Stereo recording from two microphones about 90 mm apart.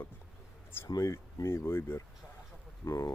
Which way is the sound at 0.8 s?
40° left (ahead or behind).